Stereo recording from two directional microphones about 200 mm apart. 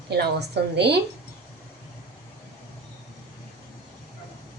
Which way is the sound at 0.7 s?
55° right (ahead or behind).